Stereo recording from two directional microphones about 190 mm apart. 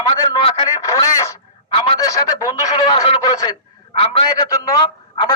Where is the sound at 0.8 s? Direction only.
20° left (ahead or behind).